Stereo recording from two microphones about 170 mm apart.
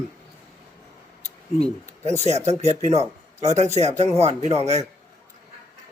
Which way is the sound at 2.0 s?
40° right (ahead or behind).